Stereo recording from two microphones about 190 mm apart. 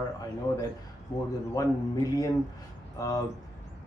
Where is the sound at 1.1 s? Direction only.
20° left (ahead or behind).